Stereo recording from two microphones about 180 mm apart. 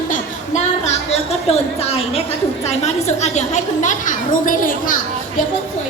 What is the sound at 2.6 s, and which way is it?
A woman's voice, 35° left (ahead or behind).